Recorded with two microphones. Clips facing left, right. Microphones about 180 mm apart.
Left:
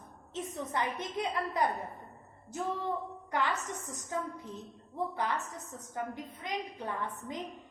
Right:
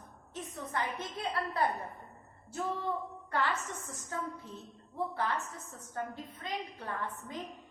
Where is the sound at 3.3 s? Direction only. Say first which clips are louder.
Left 1 dB; 15° left (ahead or behind).